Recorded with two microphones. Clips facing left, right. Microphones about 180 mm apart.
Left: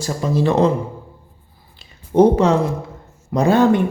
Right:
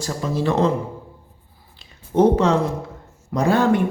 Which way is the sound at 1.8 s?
Centre (ahead or behind).